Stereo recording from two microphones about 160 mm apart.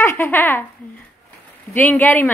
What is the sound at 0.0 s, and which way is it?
Speech, 15° left (ahead or behind).